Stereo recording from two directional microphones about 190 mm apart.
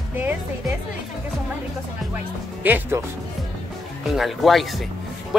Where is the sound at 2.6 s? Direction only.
10° right (ahead or behind).